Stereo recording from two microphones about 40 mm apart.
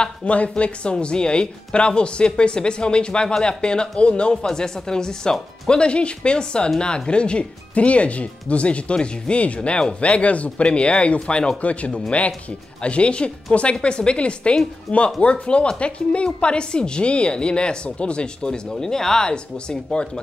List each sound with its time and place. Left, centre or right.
0.0 s speech: left
4.5 s speech: centre
10.0 s speech: left
11.6 s speech: left